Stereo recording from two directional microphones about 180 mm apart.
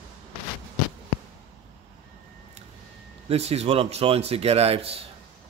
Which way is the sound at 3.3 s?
35° right (ahead or behind).